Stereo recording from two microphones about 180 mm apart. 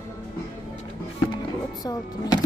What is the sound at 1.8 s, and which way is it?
Speech, 20° left (ahead or behind).